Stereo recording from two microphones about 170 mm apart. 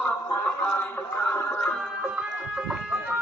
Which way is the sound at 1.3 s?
15° left (ahead or behind).